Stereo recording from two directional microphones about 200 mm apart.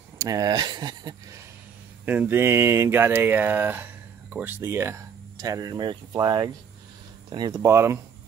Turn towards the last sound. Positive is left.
turn(degrees=-15)  # may be behind; listen again after turning